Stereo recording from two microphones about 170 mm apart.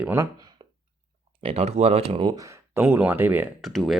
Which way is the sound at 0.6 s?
35° right (ahead or behind).